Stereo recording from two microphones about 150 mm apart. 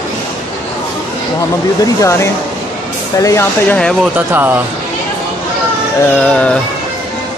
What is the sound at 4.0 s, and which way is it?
Speech, 15° right (ahead or behind).